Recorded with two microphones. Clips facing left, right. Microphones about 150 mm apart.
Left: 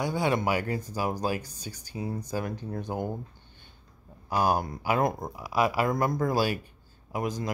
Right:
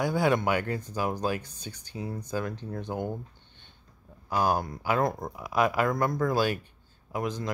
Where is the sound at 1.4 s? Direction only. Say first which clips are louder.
Left 1 dB; 40° left (ahead or behind).